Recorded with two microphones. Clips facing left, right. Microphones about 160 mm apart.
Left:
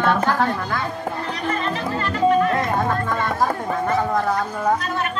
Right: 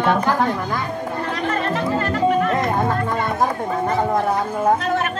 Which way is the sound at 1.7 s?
50° right (ahead or behind).